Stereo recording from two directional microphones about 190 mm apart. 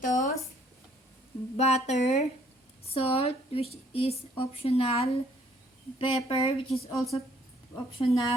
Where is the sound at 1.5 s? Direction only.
35° left (ahead or behind).